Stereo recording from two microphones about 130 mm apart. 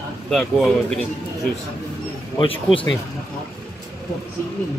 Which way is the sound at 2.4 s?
40° left (ahead or behind).